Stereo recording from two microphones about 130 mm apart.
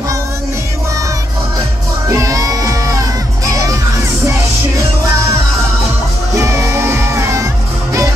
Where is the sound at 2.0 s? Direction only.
25° right (ahead or behind).